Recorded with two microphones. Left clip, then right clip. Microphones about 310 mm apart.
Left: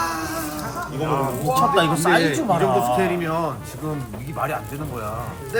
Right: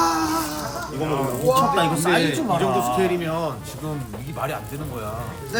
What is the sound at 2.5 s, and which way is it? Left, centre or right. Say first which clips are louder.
Speech: left 3 dB; centre.